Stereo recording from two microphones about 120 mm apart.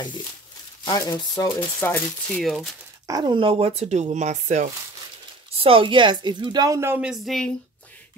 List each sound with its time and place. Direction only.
0.8 s speech: 35° left (ahead or behind)
1.8 s speech: 20° left (ahead or behind)
2.4 s speech: centre (ahead or behind)
3.1 s speech: 35° right (ahead or behind); by 4.6 s 80° right
5.5 s a woman's voice: 50° right (ahead or behind)
6.7 s speech: 20° right (ahead or behind)
7.0 s speech: 5° right (ahead or behind)